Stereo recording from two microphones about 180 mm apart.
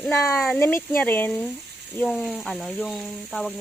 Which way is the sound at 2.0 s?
Centre (ahead or behind).